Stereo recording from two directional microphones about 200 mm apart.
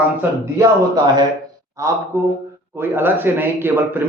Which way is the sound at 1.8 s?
15° right (ahead or behind).